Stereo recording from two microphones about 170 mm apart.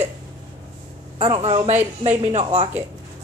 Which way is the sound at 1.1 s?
35° right (ahead or behind).